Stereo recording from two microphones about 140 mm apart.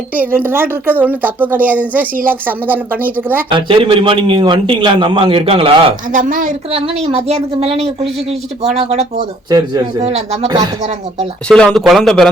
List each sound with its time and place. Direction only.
0.1 s a woman's voice: 10° right (ahead or behind)
3.5 s a man's voice: 35° right (ahead or behind)
6.1 s a woman's voice: 70° right (ahead or behind)
6.7 s speech: 45° right (ahead or behind)
9.5 s a man's voice: 25° right (ahead or behind)
10.0 s speech: 50° right (ahead or behind)
11.4 s speech: 5° left (ahead or behind)